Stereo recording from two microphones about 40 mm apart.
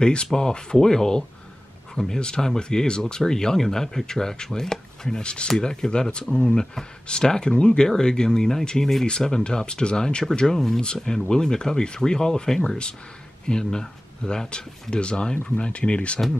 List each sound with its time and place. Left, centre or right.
0.0 s speech: left